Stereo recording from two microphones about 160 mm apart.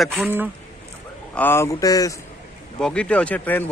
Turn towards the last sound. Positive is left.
turn(degrees=10)  # may be behind; listen again after turning